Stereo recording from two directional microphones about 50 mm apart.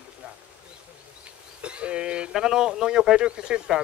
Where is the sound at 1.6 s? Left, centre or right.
Right.